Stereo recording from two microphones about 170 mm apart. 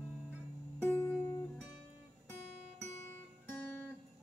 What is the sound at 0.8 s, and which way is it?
Music, 10° left (ahead or behind).